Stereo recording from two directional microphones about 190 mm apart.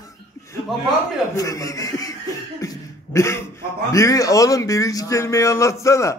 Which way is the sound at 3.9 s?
15° left (ahead or behind).